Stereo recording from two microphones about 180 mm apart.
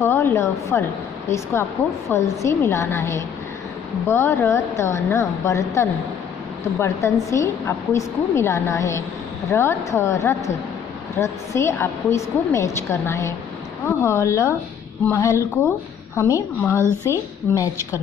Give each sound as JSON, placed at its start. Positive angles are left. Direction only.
{"t": 0.0, "sound": "a woman's voice", "side_deg": 15}